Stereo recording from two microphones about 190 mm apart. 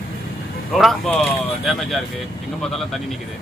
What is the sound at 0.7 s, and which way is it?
Speech, centre (ahead or behind).